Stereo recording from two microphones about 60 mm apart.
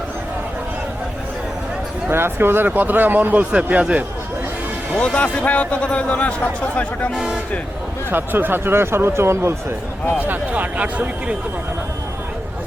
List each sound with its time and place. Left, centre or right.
2.0 s speech: right
4.9 s a man's voice: centre
8.1 s speech: right
10.2 s speech: right